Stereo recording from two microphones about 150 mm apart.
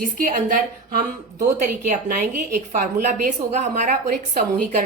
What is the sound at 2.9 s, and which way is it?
A woman's voice, 75° right (ahead or behind).